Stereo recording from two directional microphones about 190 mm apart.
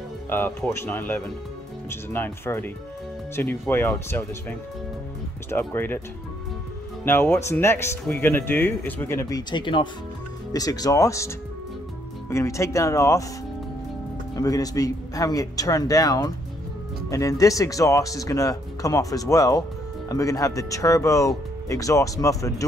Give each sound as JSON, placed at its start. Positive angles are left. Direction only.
{"t": 0.3, "sound": "speech", "side_deg": 10}
{"t": 7.1, "sound": "speech", "side_deg": 10}
{"t": 14.3, "sound": "speech", "side_deg": 20}